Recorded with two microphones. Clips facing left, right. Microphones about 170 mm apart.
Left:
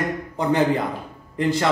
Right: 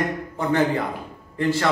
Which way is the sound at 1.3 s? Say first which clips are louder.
Left 1 dB; 20° left (ahead or behind).